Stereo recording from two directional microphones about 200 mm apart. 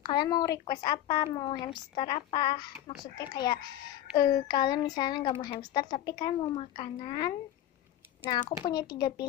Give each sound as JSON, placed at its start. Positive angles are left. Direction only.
{"t": 0.0, "sound": "a woman's voice", "side_deg": 20}
{"t": 8.6, "sound": "a woman's voice", "side_deg": 20}